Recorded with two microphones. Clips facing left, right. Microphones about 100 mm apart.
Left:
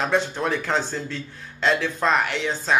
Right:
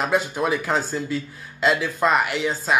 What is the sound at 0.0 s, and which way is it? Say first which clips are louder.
A man's voice: right 1 dB; 5° right (ahead or behind).